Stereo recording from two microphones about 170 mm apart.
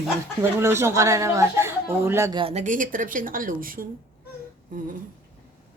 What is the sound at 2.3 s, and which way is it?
Speech, 35° right (ahead or behind).